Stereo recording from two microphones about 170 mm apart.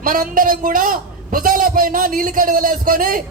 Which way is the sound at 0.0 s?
55° right (ahead or behind).